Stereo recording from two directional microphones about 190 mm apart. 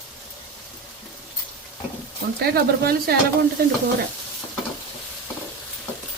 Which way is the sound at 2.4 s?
55° right (ahead or behind).